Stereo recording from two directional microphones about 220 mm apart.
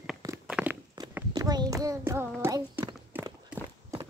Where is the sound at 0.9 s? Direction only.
15° right (ahead or behind).